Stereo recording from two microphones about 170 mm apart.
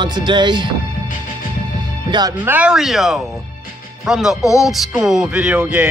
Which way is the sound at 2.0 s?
25° right (ahead or behind).